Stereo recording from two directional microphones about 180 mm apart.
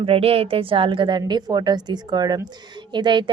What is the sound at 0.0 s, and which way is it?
A woman's voice, 35° right (ahead or behind).